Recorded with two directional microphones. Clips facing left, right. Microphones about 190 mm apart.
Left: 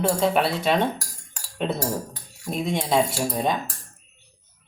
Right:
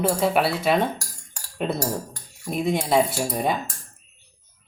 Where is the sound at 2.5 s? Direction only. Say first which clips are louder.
Right 2 dB; centre (ahead or behind).